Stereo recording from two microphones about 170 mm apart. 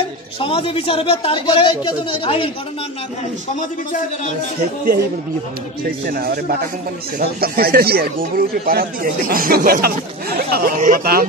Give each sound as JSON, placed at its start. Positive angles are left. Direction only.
{"t": 0.4, "sound": "speech", "side_deg": 30}
{"t": 6.0, "sound": "speech", "side_deg": -65}